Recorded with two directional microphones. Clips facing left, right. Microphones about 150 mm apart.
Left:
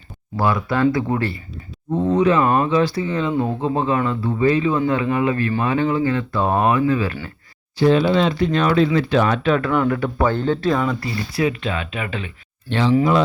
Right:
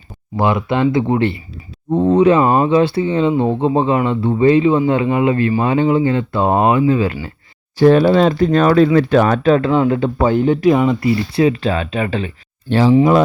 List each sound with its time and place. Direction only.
0.3 s speech: 20° right (ahead or behind)
7.8 s speech: 45° right (ahead or behind)
9.6 s speech: 25° right (ahead or behind)
11.4 s speech: 35° right (ahead or behind)